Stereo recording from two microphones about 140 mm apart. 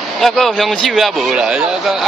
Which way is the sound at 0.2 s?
Centre (ahead or behind).